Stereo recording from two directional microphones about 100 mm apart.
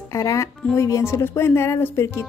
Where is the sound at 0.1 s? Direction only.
35° left (ahead or behind).